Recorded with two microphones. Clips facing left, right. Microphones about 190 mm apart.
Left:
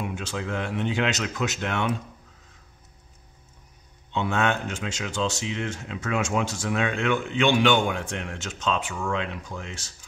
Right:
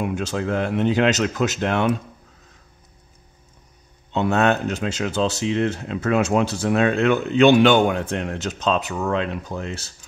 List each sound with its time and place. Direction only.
0.1 s speech: 40° right (ahead or behind)
4.1 s speech: 40° right (ahead or behind)